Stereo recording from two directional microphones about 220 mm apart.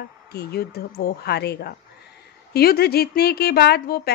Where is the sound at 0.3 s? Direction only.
45° left (ahead or behind).